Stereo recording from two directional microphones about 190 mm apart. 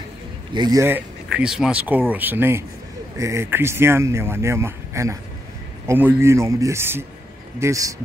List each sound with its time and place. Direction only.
0.5 s speech: 20° right (ahead or behind)